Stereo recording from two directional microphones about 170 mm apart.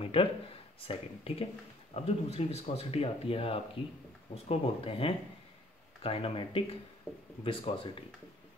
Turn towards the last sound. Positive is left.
turn(degrees=30)  # may be behind; listen again after turning